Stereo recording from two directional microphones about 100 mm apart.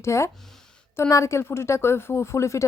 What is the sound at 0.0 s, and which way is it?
Speech, 30° left (ahead or behind).